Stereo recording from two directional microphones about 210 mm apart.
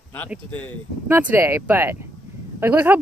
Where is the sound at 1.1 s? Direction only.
10° right (ahead or behind).